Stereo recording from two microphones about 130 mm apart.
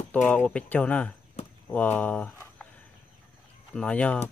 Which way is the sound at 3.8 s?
10° left (ahead or behind).